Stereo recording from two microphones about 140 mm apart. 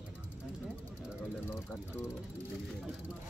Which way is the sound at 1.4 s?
15° left (ahead or behind).